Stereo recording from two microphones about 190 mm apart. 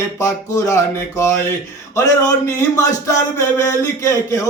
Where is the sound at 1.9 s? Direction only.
15° left (ahead or behind).